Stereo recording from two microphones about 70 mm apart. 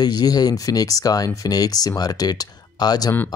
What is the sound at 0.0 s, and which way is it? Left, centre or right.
Speech, left.